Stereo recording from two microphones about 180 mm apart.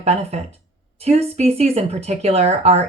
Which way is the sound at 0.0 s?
35° right (ahead or behind).